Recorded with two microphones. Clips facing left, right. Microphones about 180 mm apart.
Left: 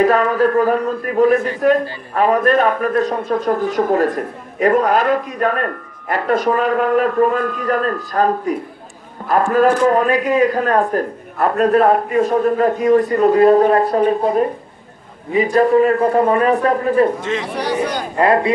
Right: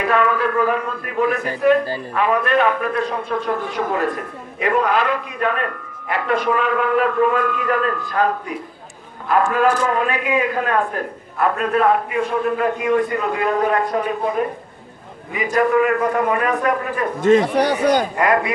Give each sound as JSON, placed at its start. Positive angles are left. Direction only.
{"t": 0.0, "sound": "a man's voice", "side_deg": 40}
{"t": 17.2, "sound": "speech", "side_deg": -45}
{"t": 18.1, "sound": "speech", "side_deg": 30}